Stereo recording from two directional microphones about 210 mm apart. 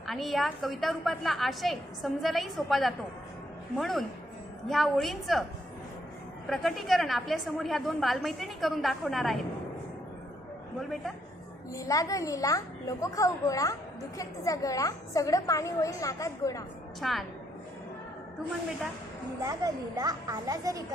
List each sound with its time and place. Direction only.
0.0 s a woman's voice: centre (ahead or behind)
6.5 s a woman's voice: centre (ahead or behind)
10.8 s a woman's voice: centre (ahead or behind)
11.7 s a woman's voice: 15° left (ahead or behind)
17.0 s a woman's voice: centre (ahead or behind)
19.4 s speech: 15° right (ahead or behind)